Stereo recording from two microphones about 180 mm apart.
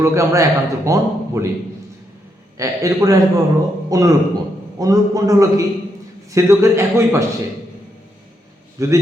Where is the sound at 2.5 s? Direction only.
20° right (ahead or behind).